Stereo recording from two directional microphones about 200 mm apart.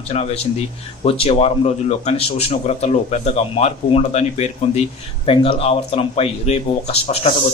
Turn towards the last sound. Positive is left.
turn(degrees=30)  # may be behind; listen again after turning